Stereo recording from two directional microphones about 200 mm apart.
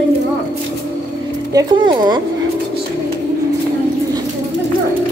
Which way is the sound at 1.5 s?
20° right (ahead or behind).